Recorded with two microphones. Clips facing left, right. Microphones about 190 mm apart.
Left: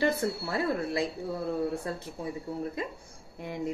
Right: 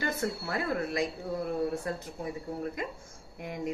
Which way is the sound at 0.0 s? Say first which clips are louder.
Left 4 dB; 30° left (ahead or behind).